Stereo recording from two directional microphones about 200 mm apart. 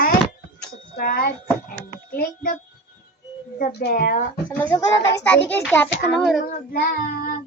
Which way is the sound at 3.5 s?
50° left (ahead or behind).